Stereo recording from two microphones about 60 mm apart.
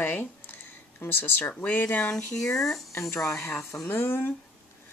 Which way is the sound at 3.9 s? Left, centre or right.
Left.